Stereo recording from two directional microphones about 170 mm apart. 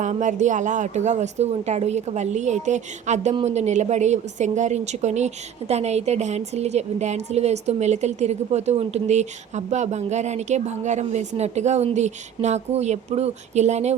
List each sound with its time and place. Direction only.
0.0 s a woman's voice: 45° right (ahead or behind)